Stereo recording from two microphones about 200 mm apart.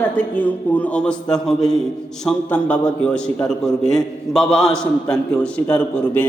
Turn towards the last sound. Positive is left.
turn(degrees=10)  # may be behind; listen again after turning